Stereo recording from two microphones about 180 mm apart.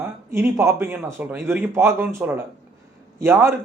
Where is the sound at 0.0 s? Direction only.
10° right (ahead or behind).